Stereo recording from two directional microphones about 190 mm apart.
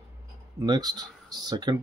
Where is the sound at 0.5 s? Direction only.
20° right (ahead or behind).